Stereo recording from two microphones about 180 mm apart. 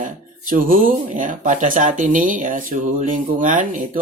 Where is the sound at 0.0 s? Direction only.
50° right (ahead or behind).